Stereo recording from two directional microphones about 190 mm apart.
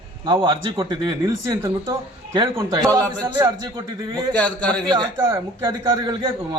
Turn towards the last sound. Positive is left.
turn(degrees=-25)  # may be behind; listen again after turning